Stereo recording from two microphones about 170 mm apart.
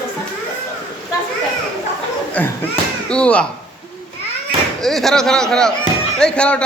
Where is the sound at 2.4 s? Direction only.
10° left (ahead or behind).